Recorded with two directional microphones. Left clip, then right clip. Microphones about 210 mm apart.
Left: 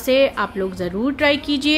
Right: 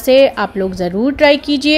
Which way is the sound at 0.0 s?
20° right (ahead or behind).